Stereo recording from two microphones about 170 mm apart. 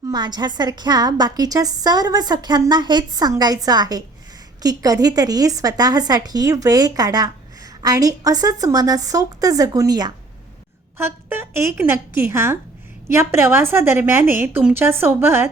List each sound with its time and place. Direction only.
0.1 s a woman's voice: 25° right (ahead or behind)